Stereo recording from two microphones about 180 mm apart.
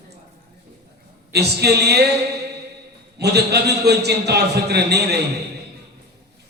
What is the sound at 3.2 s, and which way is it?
A man's voice, 65° right (ahead or behind).